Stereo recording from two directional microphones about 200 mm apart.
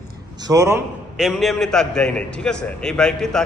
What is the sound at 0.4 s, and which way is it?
Speech, 15° right (ahead or behind).